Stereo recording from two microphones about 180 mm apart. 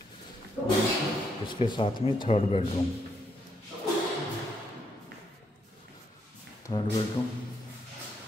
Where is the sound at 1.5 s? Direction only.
25° left (ahead or behind).